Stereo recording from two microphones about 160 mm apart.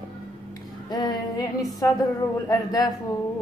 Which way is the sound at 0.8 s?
25° left (ahead or behind).